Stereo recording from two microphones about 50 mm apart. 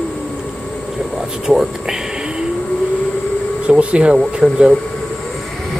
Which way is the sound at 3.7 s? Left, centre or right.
Right.